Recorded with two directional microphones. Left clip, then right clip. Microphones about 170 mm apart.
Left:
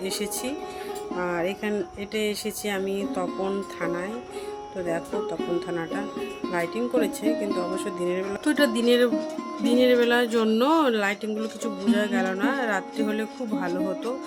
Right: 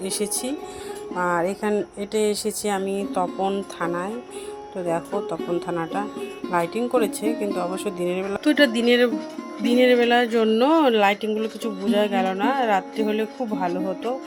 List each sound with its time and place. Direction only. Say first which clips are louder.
0.0 s speech: right 2 dB; 15° right (ahead or behind)
3.2 s speech: right 4 dB; centre (ahead or behind)
5.1 s speech: right 2 dB; centre (ahead or behind)
7.0 s speech: right 2 dB; 20° right (ahead or behind)
7.4 s speech: right 2 dB; centre (ahead or behind)
7.9 s speech: right 2 dB; 20° right (ahead or behind); by 14.2 s centre (ahead or behind)